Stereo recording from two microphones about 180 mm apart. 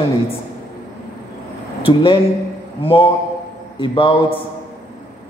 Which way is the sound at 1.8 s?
30° left (ahead or behind).